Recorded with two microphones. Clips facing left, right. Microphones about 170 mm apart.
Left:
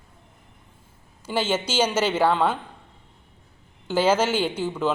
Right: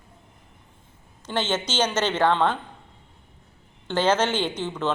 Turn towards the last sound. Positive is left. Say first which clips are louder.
# left 2 dB
turn(degrees=10)  # may be behind; listen again after turning